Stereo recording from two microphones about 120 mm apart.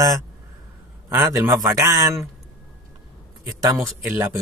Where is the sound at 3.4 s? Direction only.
30° right (ahead or behind).